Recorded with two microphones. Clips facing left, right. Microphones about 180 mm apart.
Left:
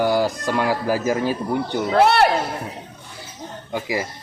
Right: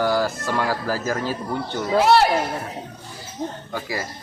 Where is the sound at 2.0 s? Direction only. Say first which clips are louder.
Even; 60° left (ahead or behind).